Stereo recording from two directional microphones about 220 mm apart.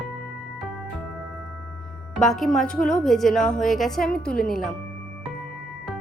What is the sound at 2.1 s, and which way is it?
Speech, centre (ahead or behind).